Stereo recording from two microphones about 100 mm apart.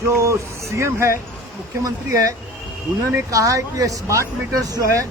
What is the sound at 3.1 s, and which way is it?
Speech, 30° right (ahead or behind).